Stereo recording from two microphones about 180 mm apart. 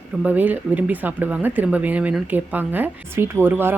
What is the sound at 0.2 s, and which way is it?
Speech, 10° right (ahead or behind).